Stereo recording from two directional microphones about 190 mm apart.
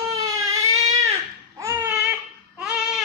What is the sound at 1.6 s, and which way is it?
Babbling, 15° right (ahead or behind).